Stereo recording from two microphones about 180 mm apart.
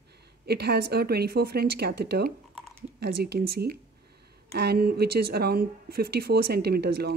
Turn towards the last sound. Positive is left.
turn(degrees=-65)  # may be behind; listen again after turning